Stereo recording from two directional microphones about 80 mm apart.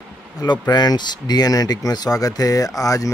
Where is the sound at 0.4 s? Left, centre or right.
Left.